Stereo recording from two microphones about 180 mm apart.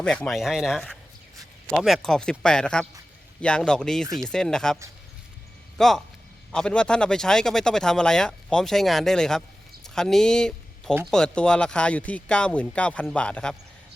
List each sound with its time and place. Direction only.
0.0 s speech: 5° left (ahead or behind)